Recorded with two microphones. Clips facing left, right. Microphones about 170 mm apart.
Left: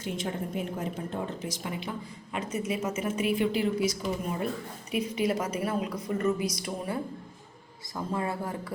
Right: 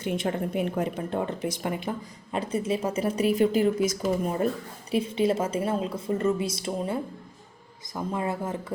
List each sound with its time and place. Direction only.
0.0 s speech: 65° right (ahead or behind)
2.3 s a woman's voice: 35° right (ahead or behind)
4.9 s a woman's voice: 30° right (ahead or behind)